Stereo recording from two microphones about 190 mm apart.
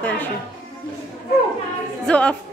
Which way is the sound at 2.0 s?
5° left (ahead or behind).